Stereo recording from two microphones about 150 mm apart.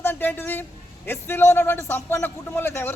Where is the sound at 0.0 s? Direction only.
15° left (ahead or behind).